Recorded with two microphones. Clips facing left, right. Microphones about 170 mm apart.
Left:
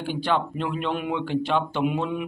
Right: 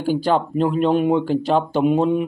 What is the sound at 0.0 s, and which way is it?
Speech, 40° right (ahead or behind).